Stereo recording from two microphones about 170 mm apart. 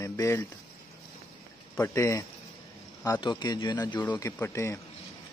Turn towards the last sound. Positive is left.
turn(degrees=15)  # may be behind; listen again after turning